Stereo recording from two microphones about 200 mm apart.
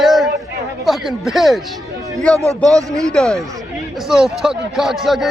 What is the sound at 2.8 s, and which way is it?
Speech, 15° right (ahead or behind).